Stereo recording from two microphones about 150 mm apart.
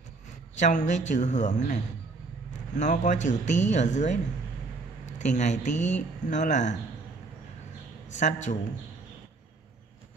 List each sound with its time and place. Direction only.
0.6 s speech: 55° left (ahead or behind)
5.2 s speech: 50° left (ahead or behind)
8.2 s a man's voice: 55° left (ahead or behind)